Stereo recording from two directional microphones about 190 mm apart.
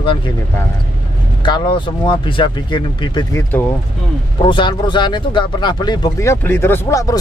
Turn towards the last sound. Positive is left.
turn(degrees=15)  # may be behind; listen again after turning